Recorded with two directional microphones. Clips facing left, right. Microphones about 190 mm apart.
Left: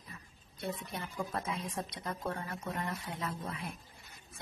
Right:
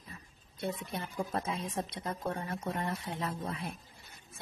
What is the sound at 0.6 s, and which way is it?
Speech, 30° right (ahead or behind).